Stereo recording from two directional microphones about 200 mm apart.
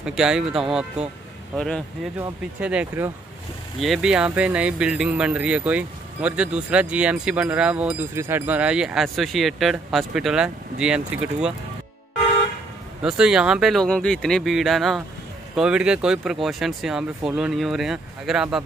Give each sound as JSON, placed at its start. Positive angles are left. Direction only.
{"t": 0.0, "sound": "speech", "side_deg": -5}
{"t": 2.1, "sound": "speech", "side_deg": -5}
{"t": 13.0, "sound": "speech", "side_deg": -5}